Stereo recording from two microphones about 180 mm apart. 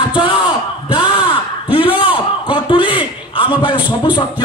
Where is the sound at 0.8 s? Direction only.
30° left (ahead or behind).